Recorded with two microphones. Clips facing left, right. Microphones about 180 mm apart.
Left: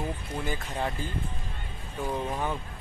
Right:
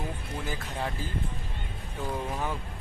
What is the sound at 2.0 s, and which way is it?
Speech, 10° left (ahead or behind).